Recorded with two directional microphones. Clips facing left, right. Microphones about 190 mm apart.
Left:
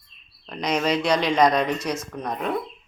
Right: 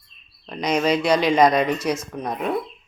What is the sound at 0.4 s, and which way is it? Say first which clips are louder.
Speech: right 3 dB; centre (ahead or behind).